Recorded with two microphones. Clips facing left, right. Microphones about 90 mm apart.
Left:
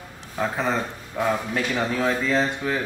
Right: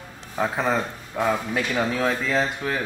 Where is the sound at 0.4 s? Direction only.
5° right (ahead or behind).